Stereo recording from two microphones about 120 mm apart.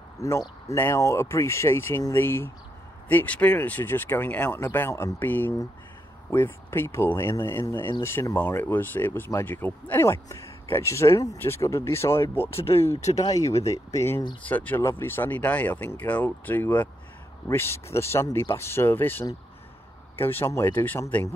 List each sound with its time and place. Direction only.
0.2 s speech: 25° left (ahead or behind)